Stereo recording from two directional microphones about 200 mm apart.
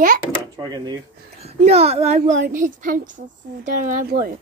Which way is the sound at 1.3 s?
30° right (ahead or behind).